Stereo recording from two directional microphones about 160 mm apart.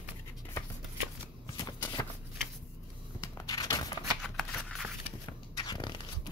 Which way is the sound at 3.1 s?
20° left (ahead or behind).